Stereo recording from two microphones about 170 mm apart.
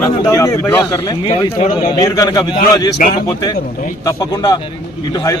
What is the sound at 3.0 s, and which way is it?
Speech, 50° left (ahead or behind).